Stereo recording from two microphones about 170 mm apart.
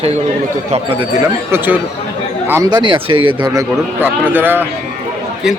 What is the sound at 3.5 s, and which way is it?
A man's voice, 15° right (ahead or behind).